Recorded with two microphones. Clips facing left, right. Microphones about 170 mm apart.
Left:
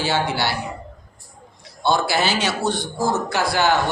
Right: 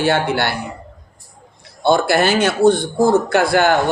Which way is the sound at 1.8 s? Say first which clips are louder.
Right 5 dB; 55° right (ahead or behind).